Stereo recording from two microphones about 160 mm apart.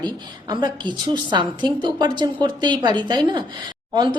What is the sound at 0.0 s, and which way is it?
A woman's voice, 25° right (ahead or behind).